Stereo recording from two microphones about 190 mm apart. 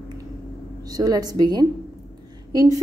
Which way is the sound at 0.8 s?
20° right (ahead or behind).